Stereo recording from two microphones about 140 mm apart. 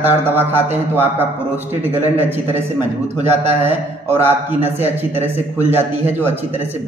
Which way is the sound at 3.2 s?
50° right (ahead or behind).